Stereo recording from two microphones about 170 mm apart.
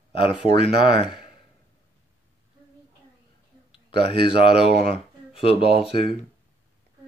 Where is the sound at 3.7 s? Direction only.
30° left (ahead or behind).